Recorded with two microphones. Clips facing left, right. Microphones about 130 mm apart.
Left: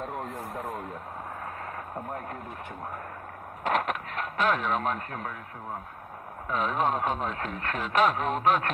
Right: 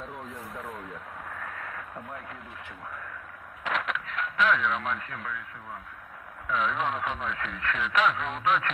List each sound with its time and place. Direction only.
0.0 s radio: 50° left (ahead or behind)
1.4 s radio: 35° left (ahead or behind)
3.6 s speech: 45° left (ahead or behind)
6.4 s speech: 40° left (ahead or behind)